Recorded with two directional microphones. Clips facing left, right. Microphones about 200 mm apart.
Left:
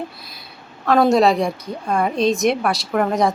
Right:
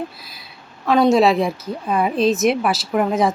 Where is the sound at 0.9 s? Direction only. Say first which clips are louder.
Even; centre (ahead or behind).